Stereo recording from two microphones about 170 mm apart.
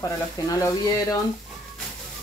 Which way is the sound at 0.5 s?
20° left (ahead or behind).